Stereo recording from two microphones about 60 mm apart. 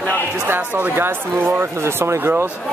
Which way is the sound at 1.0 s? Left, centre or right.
Right.